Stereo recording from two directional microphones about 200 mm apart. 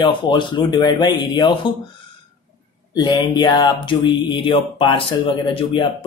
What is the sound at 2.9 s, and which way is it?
Speech, 20° left (ahead or behind).